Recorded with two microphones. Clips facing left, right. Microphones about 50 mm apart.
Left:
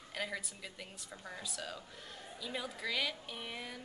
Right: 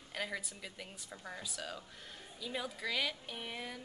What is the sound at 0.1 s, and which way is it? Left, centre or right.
A woman's voice, centre.